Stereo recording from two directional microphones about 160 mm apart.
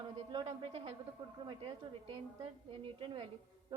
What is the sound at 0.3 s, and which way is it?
A woman's voice, 40° right (ahead or behind).